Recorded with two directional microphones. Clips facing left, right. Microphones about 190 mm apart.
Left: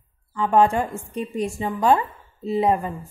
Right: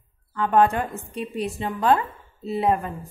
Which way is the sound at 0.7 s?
30° left (ahead or behind).